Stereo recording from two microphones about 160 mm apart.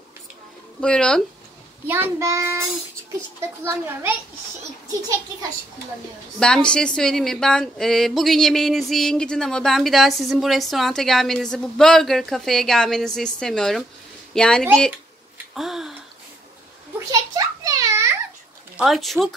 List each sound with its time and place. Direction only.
0.7 s speech: 5° left (ahead or behind)
1.9 s a child's voice: 15° right (ahead or behind)
6.4 s a woman's voice: 5° left (ahead or behind)
17.1 s children playing: 20° right (ahead or behind)
18.8 s speech: centre (ahead or behind)